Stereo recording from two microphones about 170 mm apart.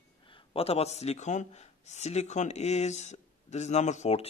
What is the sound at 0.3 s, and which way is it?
Speech, 35° left (ahead or behind).